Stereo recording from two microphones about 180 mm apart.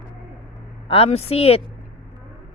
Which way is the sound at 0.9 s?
35° left (ahead or behind).